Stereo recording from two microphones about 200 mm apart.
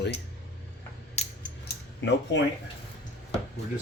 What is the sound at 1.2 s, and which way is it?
Scissors, 35° left (ahead or behind).